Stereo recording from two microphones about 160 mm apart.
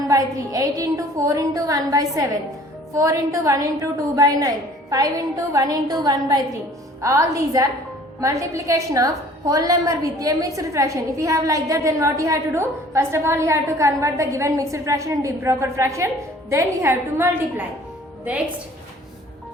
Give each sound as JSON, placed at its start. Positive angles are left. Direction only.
{"t": 0.1, "sound": "a woman's voice", "side_deg": -20}